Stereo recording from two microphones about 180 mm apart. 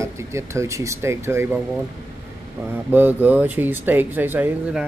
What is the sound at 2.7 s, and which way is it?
Speech, 10° right (ahead or behind).